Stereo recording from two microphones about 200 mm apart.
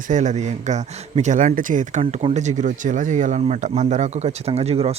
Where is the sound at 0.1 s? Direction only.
35° right (ahead or behind).